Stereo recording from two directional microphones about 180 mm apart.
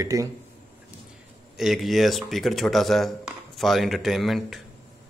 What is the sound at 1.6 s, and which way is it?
Speech, centre (ahead or behind).